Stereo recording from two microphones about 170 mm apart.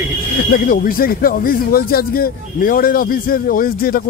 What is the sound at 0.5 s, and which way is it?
Speech, 55° left (ahead or behind).